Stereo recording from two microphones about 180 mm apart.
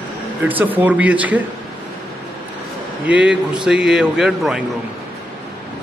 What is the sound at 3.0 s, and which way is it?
A man's voice, 5° right (ahead or behind).